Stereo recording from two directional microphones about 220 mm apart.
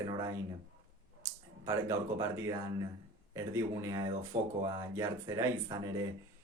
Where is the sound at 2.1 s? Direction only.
15° right (ahead or behind).